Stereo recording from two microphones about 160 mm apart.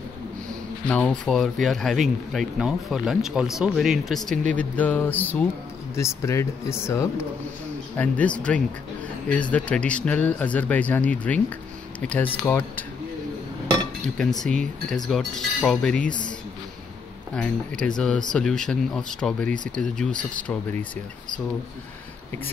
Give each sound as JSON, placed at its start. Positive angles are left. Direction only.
{"t": 0.8, "sound": "speech", "side_deg": 10}
{"t": 14.0, "sound": "speech", "side_deg": 5}
{"t": 17.3, "sound": "speech", "side_deg": 5}